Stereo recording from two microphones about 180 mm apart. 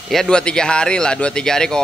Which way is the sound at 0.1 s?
5° left (ahead or behind).